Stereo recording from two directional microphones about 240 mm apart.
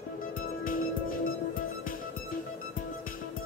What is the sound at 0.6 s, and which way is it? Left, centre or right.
Music, left.